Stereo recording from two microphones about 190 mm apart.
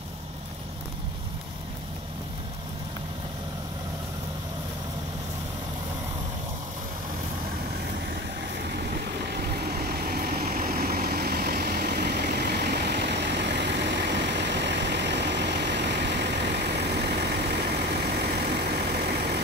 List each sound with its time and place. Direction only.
9.7 s vehicle: 55° right (ahead or behind)
12.4 s vehicle: 60° right (ahead or behind)